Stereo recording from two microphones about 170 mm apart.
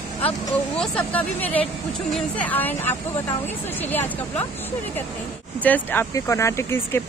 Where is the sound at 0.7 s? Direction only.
10° left (ahead or behind).